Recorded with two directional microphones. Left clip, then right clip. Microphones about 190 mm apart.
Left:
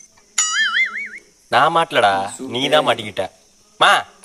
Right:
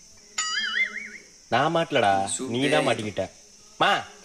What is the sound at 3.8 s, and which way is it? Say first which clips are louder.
Speech: left 9 dB; 50° left (ahead or behind).